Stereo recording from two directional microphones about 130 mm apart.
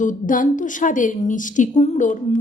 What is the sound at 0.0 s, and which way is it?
A woman's voice, 85° left.